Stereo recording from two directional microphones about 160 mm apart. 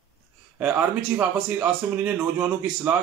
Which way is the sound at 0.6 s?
10° right (ahead or behind).